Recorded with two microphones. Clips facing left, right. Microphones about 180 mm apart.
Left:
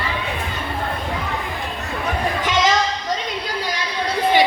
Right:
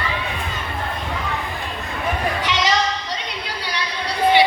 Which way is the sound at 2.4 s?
50° left (ahead or behind).